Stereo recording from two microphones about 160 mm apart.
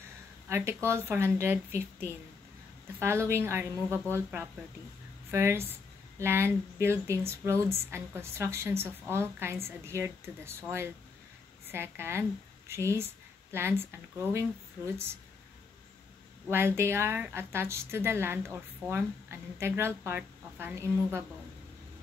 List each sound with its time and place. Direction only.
0.5 s a woman's voice: 15° right (ahead or behind)
16.4 s a woman's voice: 15° right (ahead or behind)